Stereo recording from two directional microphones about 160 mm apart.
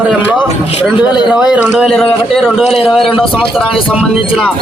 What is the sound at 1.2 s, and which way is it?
Speech, 5° right (ahead or behind).